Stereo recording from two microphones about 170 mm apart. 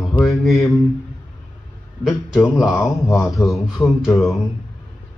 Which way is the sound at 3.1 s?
Centre (ahead or behind).